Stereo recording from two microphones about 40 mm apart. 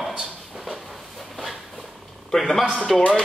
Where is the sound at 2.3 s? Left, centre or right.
Centre.